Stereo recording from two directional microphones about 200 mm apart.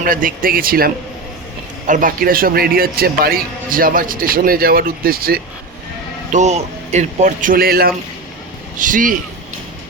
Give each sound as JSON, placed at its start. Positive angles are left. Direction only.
{"t": 0.0, "sound": "a man's voice", "side_deg": -45}
{"t": 6.3, "sound": "speech", "side_deg": -35}